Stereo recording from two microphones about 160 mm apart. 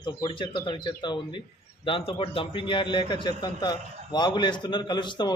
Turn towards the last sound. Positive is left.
turn(degrees=30)  # may be behind; listen again after turning